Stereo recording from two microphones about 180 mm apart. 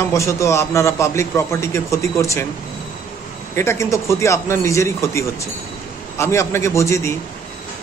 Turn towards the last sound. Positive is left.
turn(degrees=15)  # may be behind; listen again after turning